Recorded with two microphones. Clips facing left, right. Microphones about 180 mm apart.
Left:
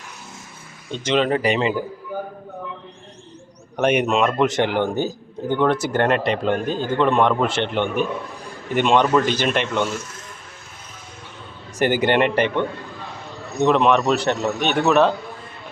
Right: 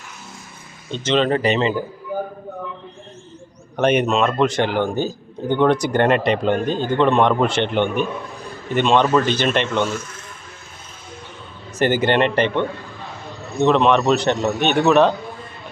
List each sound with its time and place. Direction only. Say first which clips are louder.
0.9 s speech: right 1 dB; 10° left (ahead or behind)
3.8 s speech: right 1 dB; 10° left (ahead or behind)
5.5 s a man's voice: right 3 dB; 5° left (ahead or behind)
8.7 s speech: right 1 dB; 10° left (ahead or behind)
11.8 s a man's voice: right 1 dB; 15° left (ahead or behind)